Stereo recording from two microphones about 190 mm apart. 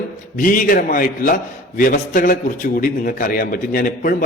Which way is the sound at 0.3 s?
45° left (ahead or behind).